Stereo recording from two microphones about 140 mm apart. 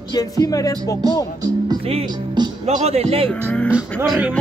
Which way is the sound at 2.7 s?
50° right (ahead or behind).